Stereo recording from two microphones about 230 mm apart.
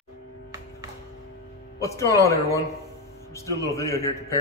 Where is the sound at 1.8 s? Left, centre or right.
Centre.